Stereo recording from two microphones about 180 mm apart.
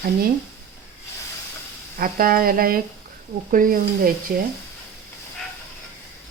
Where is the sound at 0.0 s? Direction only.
55° right (ahead or behind).